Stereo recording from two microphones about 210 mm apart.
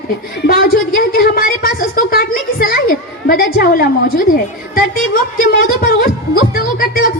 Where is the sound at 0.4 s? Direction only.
45° left (ahead or behind).